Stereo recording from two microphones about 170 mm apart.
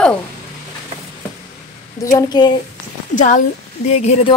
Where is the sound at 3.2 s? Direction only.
50° left (ahead or behind).